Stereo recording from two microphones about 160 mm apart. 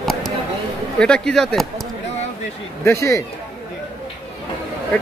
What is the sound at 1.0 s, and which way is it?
Speech, 5° left (ahead or behind).